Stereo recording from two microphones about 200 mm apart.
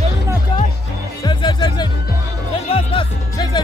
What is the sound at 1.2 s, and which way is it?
Music, 20° left (ahead or behind).